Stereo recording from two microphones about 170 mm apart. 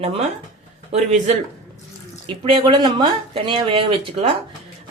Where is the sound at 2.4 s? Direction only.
30° right (ahead or behind).